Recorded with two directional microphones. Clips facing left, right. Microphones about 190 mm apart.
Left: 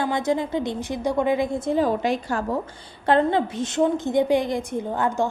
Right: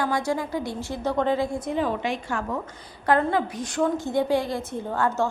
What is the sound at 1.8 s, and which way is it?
Speech, 40° left (ahead or behind).